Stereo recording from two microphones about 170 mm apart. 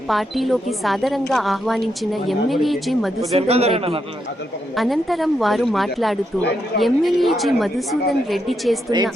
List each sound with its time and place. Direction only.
0.1 s a woman's voice: centre (ahead or behind)
3.3 s speech: 35° right (ahead or behind)
4.8 s a woman's voice: centre (ahead or behind)